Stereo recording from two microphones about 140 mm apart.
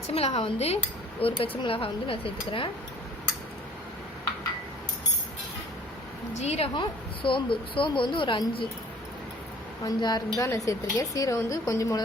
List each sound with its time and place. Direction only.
0.1 s speech: 45° left (ahead or behind)
6.4 s speech: 50° left (ahead or behind)
6.7 s speech: 35° left (ahead or behind)
9.8 s speech: 30° left (ahead or behind)